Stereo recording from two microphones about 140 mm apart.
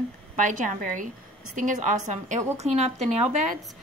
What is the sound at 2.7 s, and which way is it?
Speech, 50° right (ahead or behind).